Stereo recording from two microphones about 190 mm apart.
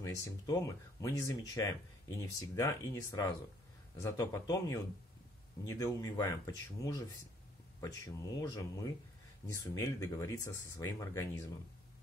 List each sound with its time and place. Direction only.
0.0 s speech: 15° left (ahead or behind)